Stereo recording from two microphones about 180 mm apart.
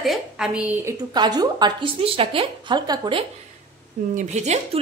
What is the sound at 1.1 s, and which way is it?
A woman's voice, 20° right (ahead or behind).